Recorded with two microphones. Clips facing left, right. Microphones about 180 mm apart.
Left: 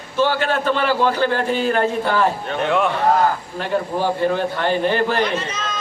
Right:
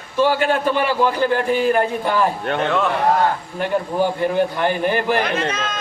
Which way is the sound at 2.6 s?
15° left (ahead or behind).